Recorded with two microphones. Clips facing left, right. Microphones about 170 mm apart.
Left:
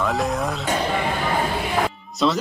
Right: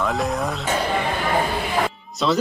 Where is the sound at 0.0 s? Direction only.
Centre (ahead or behind).